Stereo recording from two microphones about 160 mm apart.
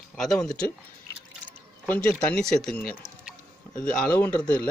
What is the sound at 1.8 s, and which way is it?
Speech, 10° left (ahead or behind).